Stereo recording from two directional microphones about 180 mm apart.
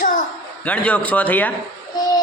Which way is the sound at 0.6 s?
10° left (ahead or behind).